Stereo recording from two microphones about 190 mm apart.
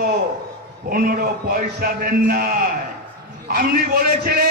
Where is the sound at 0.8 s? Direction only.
50° right (ahead or behind).